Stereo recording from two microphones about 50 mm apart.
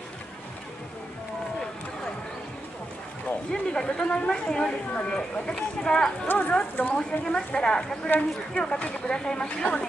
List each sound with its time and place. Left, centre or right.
3.7 s speech: centre
6.2 s speech: left
7.0 s speech: centre